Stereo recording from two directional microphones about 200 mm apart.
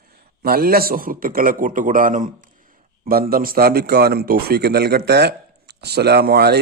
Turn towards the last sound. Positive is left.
turn(degrees=-50)  # may be behind; listen again after turning